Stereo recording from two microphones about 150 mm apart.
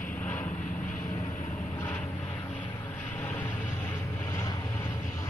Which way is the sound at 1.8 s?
15° left (ahead or behind).